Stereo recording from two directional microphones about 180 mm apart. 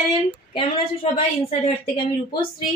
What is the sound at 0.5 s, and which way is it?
A woman's voice, 30° left (ahead or behind).